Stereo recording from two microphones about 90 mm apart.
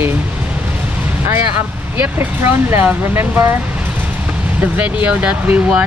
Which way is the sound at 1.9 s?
20° right (ahead or behind).